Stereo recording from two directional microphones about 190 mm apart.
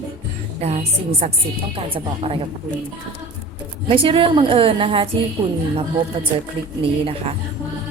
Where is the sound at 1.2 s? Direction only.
35° right (ahead or behind).